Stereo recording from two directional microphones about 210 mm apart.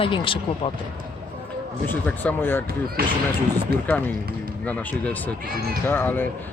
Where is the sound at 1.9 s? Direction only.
10° left (ahead or behind).